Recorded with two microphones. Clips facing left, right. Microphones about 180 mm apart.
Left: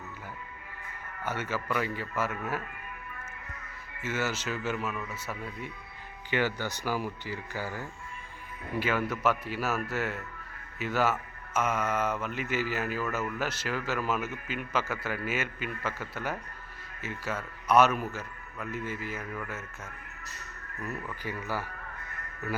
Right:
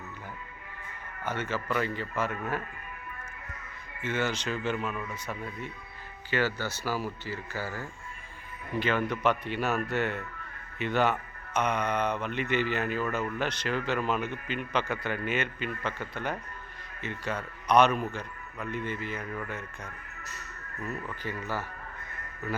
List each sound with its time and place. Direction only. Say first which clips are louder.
1.2 s speech: right 1 dB; 10° left (ahead or behind)
4.0 s speech: right 2 dB; 5° left (ahead or behind)